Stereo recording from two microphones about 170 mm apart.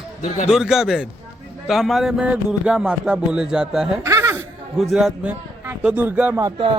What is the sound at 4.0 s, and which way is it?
Chuckle, 15° right (ahead or behind).